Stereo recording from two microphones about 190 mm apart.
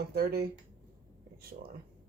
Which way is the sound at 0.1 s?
55° right (ahead or behind).